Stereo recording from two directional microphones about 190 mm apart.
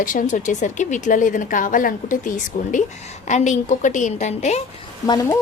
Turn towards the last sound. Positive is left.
turn(degrees=15)  # may be behind; listen again after turning